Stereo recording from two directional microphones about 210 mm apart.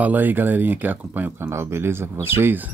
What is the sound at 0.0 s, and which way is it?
Speech, 10° right (ahead or behind).